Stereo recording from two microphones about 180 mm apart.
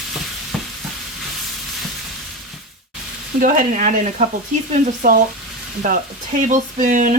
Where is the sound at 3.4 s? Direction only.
45° right (ahead or behind).